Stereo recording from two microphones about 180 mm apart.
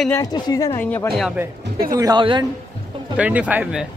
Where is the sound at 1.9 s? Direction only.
20° right (ahead or behind).